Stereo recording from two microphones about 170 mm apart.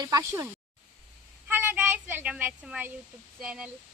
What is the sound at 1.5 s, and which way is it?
Speech, 10° right (ahead or behind).